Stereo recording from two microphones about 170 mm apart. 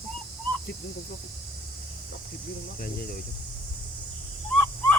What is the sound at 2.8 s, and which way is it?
Speech, 60° left (ahead or behind).